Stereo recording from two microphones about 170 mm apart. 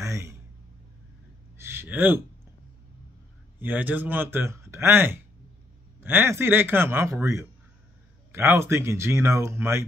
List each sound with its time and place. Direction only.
0.0 s a sound: 15° right (ahead or behind)
1.6 s speech: 15° right (ahead or behind)
3.5 s speech: 10° right (ahead or behind)